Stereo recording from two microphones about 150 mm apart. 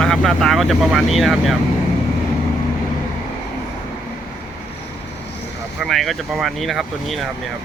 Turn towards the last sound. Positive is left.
turn(degrees=0)  # may be behind; listen again after turning